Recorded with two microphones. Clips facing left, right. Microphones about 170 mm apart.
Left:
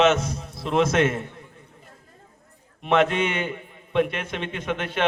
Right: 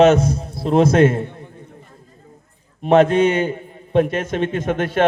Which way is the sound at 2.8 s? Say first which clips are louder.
Right 8 dB; 40° right (ahead or behind).